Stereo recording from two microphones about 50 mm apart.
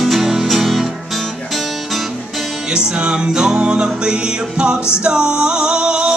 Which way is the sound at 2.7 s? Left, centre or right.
Centre.